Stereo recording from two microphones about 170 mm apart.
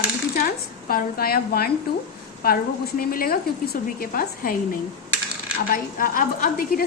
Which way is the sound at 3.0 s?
60° left (ahead or behind).